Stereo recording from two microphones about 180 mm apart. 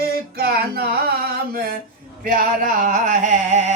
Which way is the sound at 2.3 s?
50° right (ahead or behind).